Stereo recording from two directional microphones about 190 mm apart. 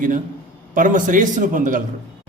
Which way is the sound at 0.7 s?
45° right (ahead or behind).